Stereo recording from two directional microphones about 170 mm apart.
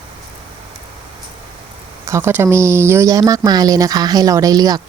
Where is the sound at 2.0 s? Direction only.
15° right (ahead or behind).